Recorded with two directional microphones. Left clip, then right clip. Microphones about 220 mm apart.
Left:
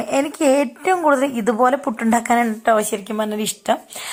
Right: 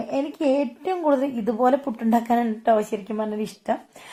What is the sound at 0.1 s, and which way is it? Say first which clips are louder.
A woman's voice: left 6 dB; 15° left (ahead or behind).